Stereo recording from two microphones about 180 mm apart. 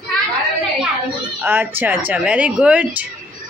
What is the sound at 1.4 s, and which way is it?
Speech, 10° right (ahead or behind).